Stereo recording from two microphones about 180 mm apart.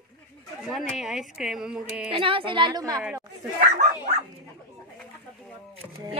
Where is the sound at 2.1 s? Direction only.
30° right (ahead or behind).